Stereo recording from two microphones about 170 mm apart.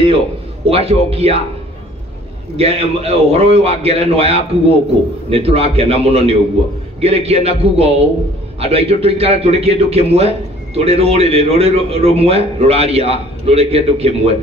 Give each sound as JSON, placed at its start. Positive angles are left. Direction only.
{"t": 0.7, "sound": "a man's voice", "side_deg": -35}
{"t": 2.5, "sound": "a man's voice", "side_deg": -35}